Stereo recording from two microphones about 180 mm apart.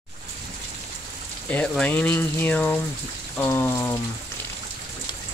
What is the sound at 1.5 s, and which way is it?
Speech, 5° left (ahead or behind).